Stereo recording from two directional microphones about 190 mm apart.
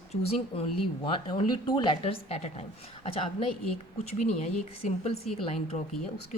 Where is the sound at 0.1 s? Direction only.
30° left (ahead or behind).